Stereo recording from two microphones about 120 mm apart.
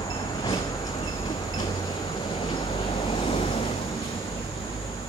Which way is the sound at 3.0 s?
45° left (ahead or behind).